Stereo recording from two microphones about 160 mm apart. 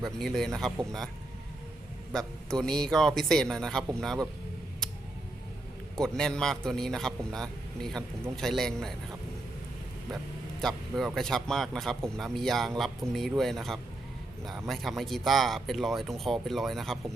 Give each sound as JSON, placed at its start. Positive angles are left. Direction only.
{"t": 0.0, "sound": "a man's voice", "side_deg": 0}
{"t": 2.1, "sound": "a man's voice", "side_deg": 5}
{"t": 6.0, "sound": "a man's voice", "side_deg": 5}
{"t": 10.6, "sound": "a man's voice", "side_deg": 0}